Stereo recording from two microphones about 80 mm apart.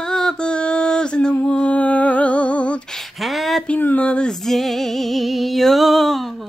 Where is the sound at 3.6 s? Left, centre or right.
Centre.